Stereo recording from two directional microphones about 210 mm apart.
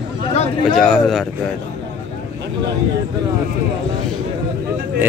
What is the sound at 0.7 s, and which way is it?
Speech, centre (ahead or behind).